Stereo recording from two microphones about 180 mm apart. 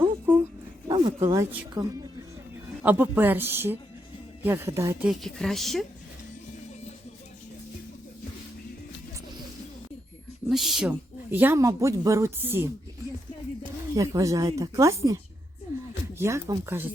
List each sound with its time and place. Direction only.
0.9 s a sound: 30° right (ahead or behind)
1.2 s a woman's voice: 15° right (ahead or behind)
5.0 s a woman's voice: centre (ahead or behind)
10.5 s a woman's voice: centre (ahead or behind)
13.9 s a woman's voice: 15° right (ahead or behind)